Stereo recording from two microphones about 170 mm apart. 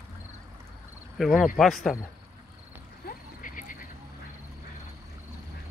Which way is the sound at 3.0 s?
50° left (ahead or behind).